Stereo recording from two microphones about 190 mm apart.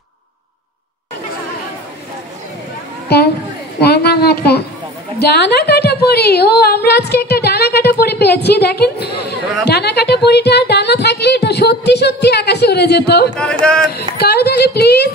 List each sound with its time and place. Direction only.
3.8 s speech: 55° left (ahead or behind)
13.4 s a man's voice: 5° left (ahead or behind)
13.9 s speech: 55° left (ahead or behind)